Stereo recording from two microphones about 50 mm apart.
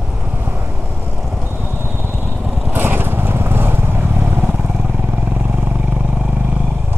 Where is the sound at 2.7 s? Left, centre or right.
Right.